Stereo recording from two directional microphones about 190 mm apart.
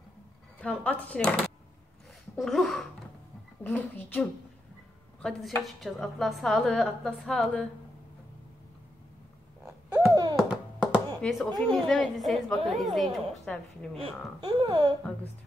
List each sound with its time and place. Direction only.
0.6 s a woman's voice: 5° left (ahead or behind)
10.3 s a sound: 5° right (ahead or behind)
12.6 s a woman's voice: centre (ahead or behind)
13.9 s speech: 25° right (ahead or behind)